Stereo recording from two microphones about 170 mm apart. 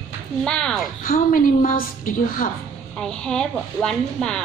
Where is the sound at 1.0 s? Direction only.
55° left (ahead or behind).